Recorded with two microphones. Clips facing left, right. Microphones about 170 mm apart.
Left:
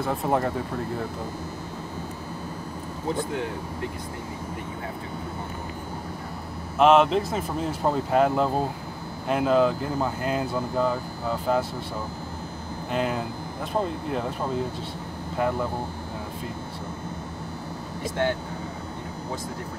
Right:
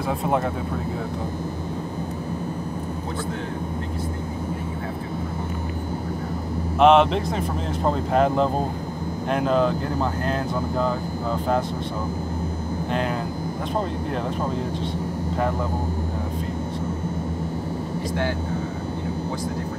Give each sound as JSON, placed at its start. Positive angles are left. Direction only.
{"t": 0.0, "sound": "speech", "side_deg": 0}
{"t": 6.8, "sound": "speech", "side_deg": 0}
{"t": 12.9, "sound": "speech", "side_deg": 5}